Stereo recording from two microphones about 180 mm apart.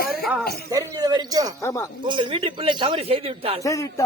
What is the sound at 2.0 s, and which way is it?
Speech, 25° right (ahead or behind).